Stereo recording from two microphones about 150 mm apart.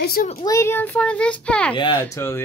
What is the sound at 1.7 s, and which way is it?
Speech, 35° left (ahead or behind).